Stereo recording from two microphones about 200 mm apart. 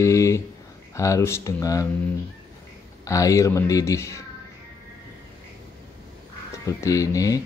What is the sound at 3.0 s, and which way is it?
Speech, 15° left (ahead or behind).